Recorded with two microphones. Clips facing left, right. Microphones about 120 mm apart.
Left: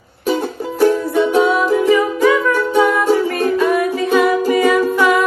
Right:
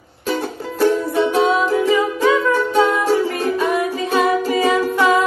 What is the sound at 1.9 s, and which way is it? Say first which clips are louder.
Music: left 3 dB; 20° right (ahead or behind).